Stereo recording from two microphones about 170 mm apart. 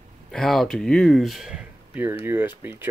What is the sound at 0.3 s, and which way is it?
Speech, 5° left (ahead or behind).